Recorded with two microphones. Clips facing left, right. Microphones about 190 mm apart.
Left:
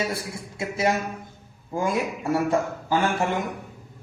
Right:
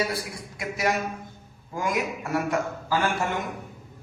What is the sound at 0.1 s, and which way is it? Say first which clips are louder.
A man's voice: left 1 dB; 25° left (ahead or behind).